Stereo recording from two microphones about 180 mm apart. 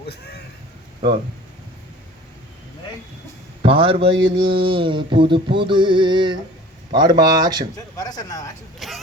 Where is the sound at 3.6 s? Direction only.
30° right (ahead or behind).